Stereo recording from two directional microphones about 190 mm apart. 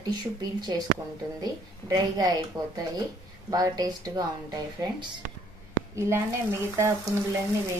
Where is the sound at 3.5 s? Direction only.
20° right (ahead or behind).